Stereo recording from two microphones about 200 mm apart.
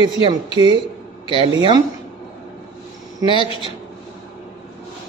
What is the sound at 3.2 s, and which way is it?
Speech, 25° right (ahead or behind).